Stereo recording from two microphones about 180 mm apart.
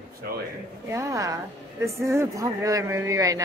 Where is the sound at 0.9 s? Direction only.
15° right (ahead or behind).